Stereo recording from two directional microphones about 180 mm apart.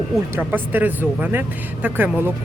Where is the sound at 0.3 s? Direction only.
10° right (ahead or behind).